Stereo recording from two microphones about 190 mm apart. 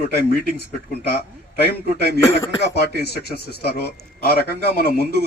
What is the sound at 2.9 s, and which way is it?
A man's voice, 55° left (ahead or behind).